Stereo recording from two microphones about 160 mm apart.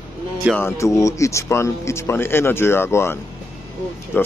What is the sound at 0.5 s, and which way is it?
Speech, 15° left (ahead or behind).